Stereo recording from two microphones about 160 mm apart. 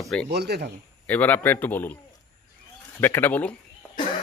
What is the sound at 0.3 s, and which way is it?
Speech, 90° right.